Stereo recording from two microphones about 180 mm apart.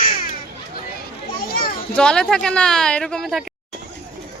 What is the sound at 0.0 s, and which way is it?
Children playing, 50° left (ahead or behind).